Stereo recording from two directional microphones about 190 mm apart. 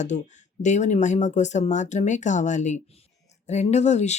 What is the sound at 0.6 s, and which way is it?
Speech, 40° left (ahead or behind).